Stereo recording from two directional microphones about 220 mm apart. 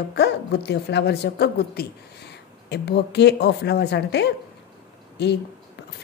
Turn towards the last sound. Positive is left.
turn(degrees=50)  # may be behind; listen again after turning